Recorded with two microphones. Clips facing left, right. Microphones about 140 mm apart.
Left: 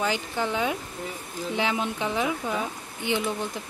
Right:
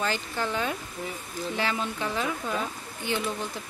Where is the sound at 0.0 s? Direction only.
15° left (ahead or behind).